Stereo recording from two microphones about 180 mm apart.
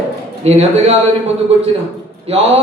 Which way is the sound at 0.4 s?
35° right (ahead or behind).